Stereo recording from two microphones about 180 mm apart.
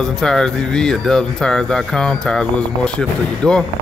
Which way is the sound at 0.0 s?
5° left (ahead or behind).